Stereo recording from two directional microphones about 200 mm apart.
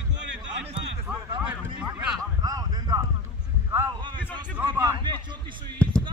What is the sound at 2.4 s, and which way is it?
Speech, 20° right (ahead or behind).